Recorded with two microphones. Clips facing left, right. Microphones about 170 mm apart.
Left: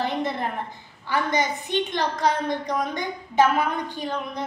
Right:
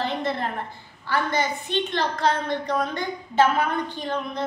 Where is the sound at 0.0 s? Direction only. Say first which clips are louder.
Even; 15° left (ahead or behind).